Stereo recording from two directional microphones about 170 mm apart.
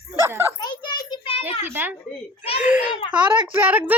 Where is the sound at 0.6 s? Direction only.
25° left (ahead or behind).